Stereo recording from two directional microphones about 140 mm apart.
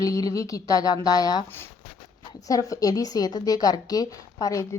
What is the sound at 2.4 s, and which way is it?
A woman's voice, 25° left (ahead or behind).